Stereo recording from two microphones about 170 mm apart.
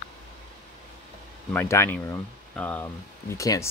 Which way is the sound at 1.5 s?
15° left (ahead or behind).